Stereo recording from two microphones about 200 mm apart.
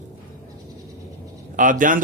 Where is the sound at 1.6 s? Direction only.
40° right (ahead or behind).